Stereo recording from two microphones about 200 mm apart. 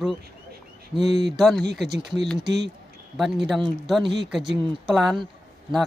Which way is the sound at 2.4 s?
60° right (ahead or behind).